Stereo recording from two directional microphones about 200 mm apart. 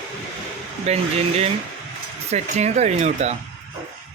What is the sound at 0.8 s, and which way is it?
Speech, 30° right (ahead or behind).